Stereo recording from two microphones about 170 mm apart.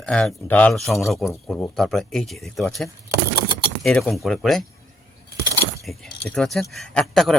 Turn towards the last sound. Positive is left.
turn(degrees=5)  # may be behind; listen again after turning